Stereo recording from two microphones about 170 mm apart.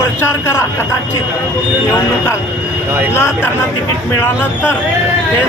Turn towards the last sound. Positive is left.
turn(degrees=15)  # may be behind; listen again after turning